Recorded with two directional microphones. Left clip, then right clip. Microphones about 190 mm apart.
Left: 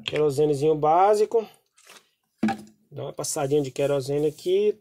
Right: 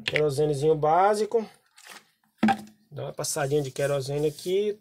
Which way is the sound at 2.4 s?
15° right (ahead or behind).